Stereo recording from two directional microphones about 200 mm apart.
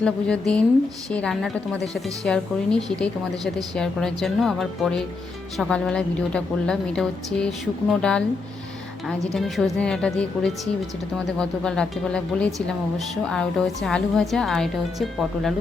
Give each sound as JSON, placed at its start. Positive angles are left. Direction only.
{"t": 0.0, "sound": "a woman's voice", "side_deg": 5}
{"t": 9.3, "sound": "a woman's voice", "side_deg": 0}